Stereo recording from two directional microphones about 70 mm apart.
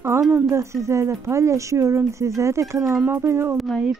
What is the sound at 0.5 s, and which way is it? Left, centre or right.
Speech, right.